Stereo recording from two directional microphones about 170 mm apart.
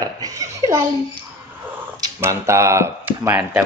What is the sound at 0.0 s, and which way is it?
Speech, 20° right (ahead or behind).